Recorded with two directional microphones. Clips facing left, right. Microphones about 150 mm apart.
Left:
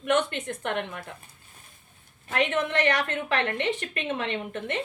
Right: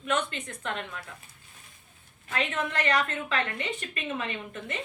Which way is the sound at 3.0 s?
65° left (ahead or behind).